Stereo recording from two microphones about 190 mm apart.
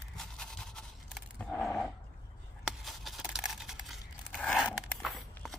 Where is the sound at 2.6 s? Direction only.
Centre (ahead or behind).